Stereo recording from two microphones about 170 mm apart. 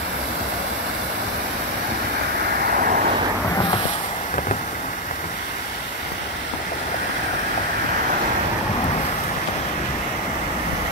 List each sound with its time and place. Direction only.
2.7 s waves: 55° right (ahead or behind)